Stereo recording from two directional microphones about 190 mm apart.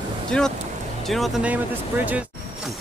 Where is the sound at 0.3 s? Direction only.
5° left (ahead or behind).